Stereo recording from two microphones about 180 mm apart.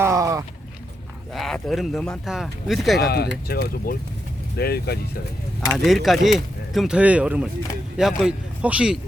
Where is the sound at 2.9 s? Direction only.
60° left (ahead or behind).